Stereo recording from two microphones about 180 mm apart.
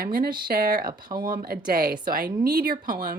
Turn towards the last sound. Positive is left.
turn(degrees=-55)  # may be behind; listen again after turning